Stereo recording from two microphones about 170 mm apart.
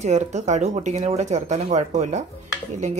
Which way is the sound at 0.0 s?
40° right (ahead or behind).